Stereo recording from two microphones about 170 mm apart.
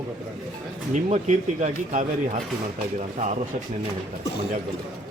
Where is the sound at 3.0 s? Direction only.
45° right (ahead or behind).